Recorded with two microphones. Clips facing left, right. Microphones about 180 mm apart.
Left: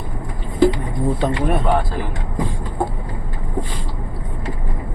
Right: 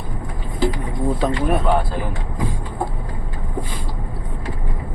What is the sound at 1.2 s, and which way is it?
Speech, centre (ahead or behind).